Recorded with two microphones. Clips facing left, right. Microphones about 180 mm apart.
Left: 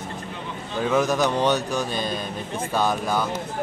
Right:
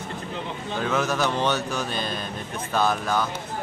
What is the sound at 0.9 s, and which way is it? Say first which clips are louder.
Speech: left 4 dB; 15° left (ahead or behind).